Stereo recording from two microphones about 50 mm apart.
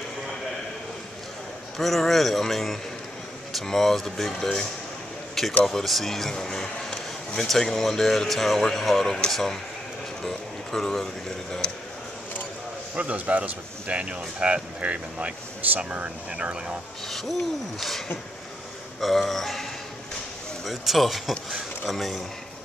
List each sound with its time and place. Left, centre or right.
1.8 s speech: centre
11.6 s a sound: left
12.9 s speech: right
17.7 s speech: centre